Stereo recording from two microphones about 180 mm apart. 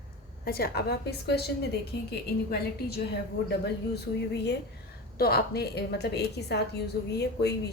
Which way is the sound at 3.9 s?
65° left (ahead or behind).